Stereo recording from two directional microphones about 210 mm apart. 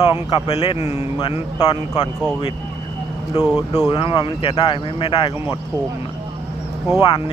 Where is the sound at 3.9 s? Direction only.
20° left (ahead or behind).